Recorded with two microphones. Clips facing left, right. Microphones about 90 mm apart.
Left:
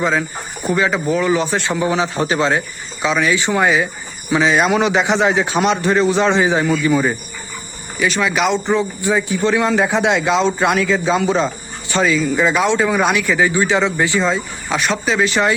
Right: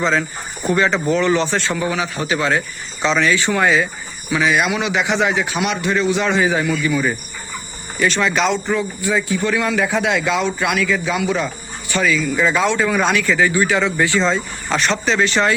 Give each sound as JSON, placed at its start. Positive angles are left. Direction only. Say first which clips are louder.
{"t": 0.0, "sound": "speech", "louder": "even", "side_deg": 10}
{"t": 1.9, "sound": "a man's voice", "louder": "left 3 dB", "side_deg": 30}
{"t": 3.0, "sound": "speech", "louder": "even", "side_deg": 5}
{"t": 3.2, "sound": "a man's voice", "louder": "left 2 dB", "side_deg": 20}
{"t": 7.9, "sound": "speech", "louder": "even", "side_deg": 5}
{"t": 8.4, "sound": "speech", "louder": "left 2 dB", "side_deg": 25}
{"t": 14.3, "sound": "speech", "louder": "even", "side_deg": 5}